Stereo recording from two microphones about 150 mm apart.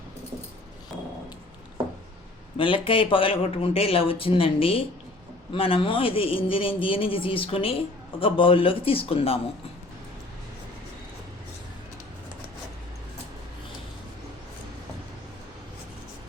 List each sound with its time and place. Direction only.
2.6 s speech: 35° left (ahead or behind)